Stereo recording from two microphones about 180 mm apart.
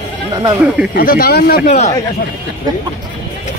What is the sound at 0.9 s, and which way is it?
Speech, 55° left (ahead or behind).